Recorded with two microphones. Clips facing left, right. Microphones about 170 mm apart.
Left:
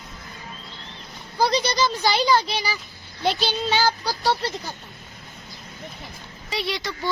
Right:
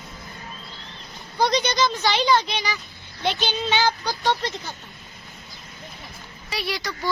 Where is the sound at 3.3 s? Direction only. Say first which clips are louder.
Left 1 dB; 35° left (ahead or behind).